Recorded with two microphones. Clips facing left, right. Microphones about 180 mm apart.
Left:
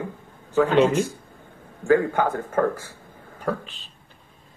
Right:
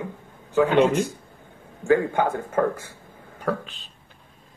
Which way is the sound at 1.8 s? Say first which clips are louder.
Left 1 dB; 25° right (ahead or behind).